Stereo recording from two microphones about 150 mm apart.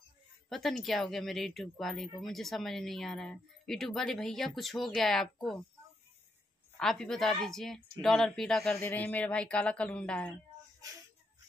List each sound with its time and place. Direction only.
0.5 s speech: centre (ahead or behind)
6.8 s speech: 5° left (ahead or behind)